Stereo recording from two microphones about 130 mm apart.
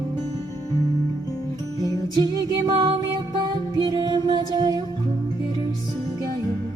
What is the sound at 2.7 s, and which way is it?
Music, 45° right (ahead or behind).